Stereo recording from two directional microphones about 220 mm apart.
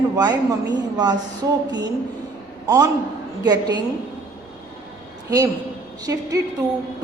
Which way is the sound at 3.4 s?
20° right (ahead or behind).